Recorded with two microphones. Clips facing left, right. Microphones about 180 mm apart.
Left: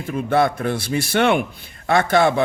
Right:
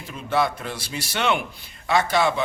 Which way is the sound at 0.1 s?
55° left (ahead or behind).